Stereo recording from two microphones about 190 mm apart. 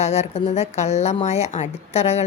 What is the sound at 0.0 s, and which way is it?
A woman's voice, 35° left (ahead or behind).